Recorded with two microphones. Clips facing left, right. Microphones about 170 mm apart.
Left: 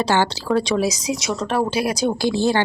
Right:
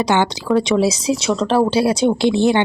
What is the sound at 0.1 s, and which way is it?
Speech, 20° right (ahead or behind).